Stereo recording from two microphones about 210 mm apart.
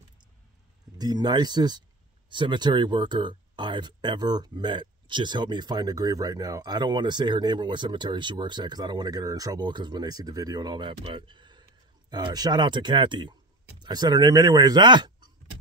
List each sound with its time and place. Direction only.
0.9 s speech: 20° right (ahead or behind)